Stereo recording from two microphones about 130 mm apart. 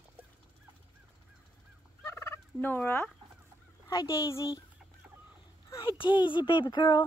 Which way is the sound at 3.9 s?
25° left (ahead or behind).